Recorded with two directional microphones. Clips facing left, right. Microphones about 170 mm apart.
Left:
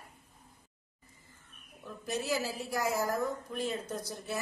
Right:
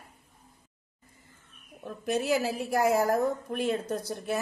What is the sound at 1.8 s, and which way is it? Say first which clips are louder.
A woman's voice: right 7 dB; 60° right (ahead or behind).